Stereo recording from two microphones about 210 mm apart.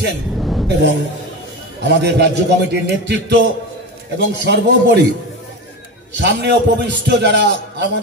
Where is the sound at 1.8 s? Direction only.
55° right (ahead or behind).